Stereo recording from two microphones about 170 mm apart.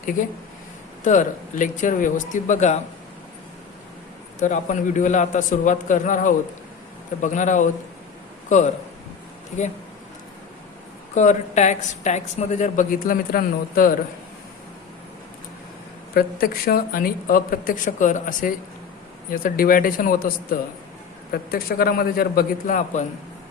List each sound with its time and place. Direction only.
1.0 s a woman's voice: 45° left (ahead or behind)
4.4 s a woman's voice: 50° left (ahead or behind)
11.1 s a woman's voice: 45° left (ahead or behind)
16.1 s speech: 60° left (ahead or behind); by 23.0 s 45° left (ahead or behind)